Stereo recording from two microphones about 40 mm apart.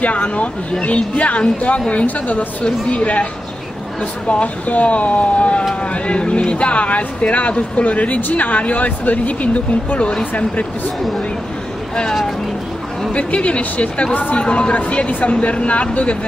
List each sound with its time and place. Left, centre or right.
0.0 s speech: left
2.0 s a woman's voice: left
4.3 s speech: left
11.9 s speech: left
13.1 s speech: left
14.4 s speech: left